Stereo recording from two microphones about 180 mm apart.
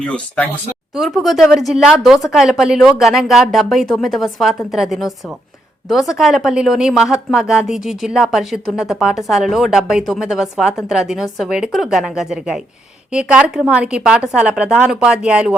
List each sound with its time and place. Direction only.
0.0 s speech: 5° left (ahead or behind)